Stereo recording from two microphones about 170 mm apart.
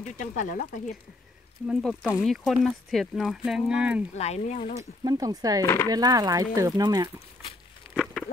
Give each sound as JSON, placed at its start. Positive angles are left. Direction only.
{"t": 0.0, "sound": "speech", "side_deg": 50}
{"t": 1.7, "sound": "speech", "side_deg": 5}
{"t": 4.1, "sound": "speech", "side_deg": 40}
{"t": 4.7, "sound": "speech", "side_deg": -20}
{"t": 7.9, "sound": "a sound", "side_deg": 0}